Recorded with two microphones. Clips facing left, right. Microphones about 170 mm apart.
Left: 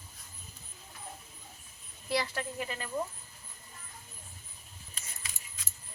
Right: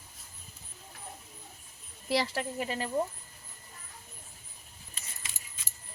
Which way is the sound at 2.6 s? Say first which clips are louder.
Right 4 dB; 30° right (ahead or behind).